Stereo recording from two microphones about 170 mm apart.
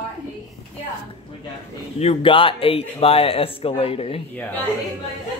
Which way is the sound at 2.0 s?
35° left (ahead or behind).